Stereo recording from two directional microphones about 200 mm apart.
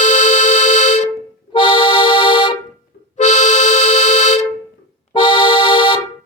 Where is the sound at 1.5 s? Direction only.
25° left (ahead or behind).